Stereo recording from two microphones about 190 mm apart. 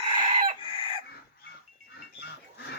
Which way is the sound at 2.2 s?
60° left (ahead or behind).